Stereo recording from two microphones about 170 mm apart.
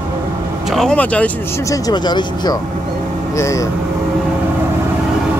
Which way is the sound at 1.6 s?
20° left (ahead or behind).